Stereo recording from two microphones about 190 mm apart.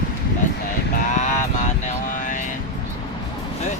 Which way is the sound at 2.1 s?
45° left (ahead or behind).